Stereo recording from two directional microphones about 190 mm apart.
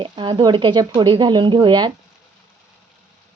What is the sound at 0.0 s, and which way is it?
Speech, 25° right (ahead or behind).